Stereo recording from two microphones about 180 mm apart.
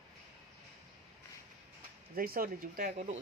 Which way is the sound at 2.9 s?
40° right (ahead or behind).